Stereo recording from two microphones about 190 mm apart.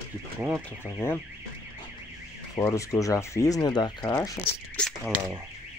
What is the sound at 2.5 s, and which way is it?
Speech, 15° left (ahead or behind).